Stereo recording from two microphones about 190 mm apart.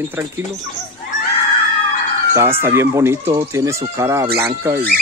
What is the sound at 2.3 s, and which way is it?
Speech, 15° right (ahead or behind).